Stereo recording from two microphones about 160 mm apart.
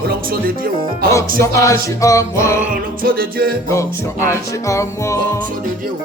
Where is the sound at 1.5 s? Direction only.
20° left (ahead or behind).